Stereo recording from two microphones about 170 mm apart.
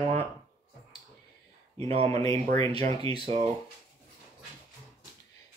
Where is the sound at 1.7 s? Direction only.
35° right (ahead or behind).